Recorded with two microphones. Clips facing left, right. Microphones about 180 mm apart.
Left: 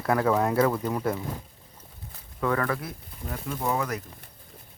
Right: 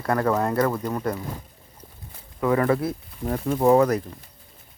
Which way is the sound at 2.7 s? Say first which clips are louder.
Right 9 dB; 30° right (ahead or behind).